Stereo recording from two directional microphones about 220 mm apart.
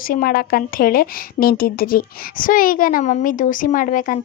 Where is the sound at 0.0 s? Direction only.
40° left (ahead or behind).